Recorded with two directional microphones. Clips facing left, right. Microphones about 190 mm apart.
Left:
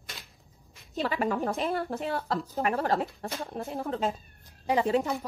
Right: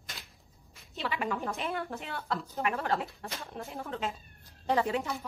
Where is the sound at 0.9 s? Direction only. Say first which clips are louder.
Left 5 dB; 40° left (ahead or behind).